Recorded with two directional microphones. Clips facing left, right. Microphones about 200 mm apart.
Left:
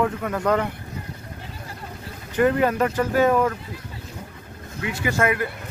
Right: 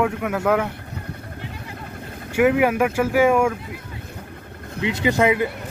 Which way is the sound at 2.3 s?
10° right (ahead or behind).